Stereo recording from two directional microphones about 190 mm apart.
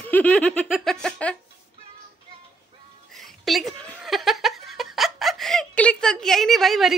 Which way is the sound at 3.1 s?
Centre (ahead or behind).